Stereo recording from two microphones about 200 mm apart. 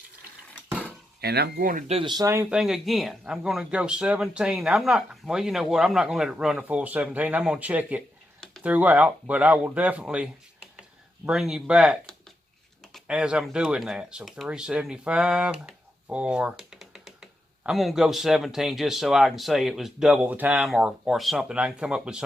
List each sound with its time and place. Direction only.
1.2 s speech: 55° right (ahead or behind)
1.9 s speech: 25° right (ahead or behind); by 22.2 s 5° right (ahead or behind)